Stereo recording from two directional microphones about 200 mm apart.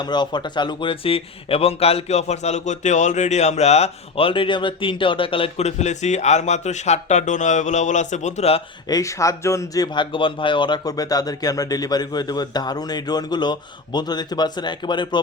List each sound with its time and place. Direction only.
0.0 s speech: 20° left (ahead or behind)
8.9 s speech: 15° left (ahead or behind)